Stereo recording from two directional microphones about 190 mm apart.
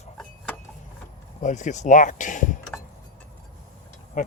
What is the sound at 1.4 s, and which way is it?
Speech, 40° left (ahead or behind).